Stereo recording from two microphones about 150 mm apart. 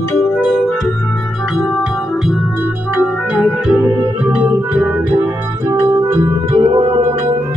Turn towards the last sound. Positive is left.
turn(degrees=-35)  # may be behind; listen again after turning